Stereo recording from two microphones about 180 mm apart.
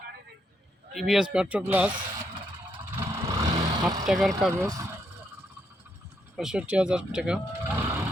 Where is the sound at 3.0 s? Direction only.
15° right (ahead or behind).